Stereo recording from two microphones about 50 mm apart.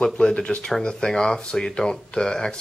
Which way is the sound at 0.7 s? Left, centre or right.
Centre.